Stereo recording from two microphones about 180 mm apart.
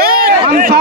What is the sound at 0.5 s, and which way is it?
Speech, 50° right (ahead or behind).